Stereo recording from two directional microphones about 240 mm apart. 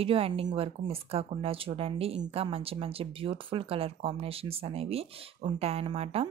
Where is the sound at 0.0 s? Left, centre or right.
Right.